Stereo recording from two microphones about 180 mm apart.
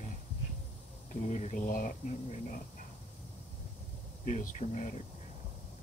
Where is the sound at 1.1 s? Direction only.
40° left (ahead or behind).